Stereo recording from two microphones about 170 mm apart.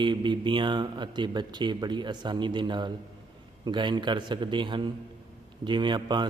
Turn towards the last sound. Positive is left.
turn(degrees=-25)  # may be behind; listen again after turning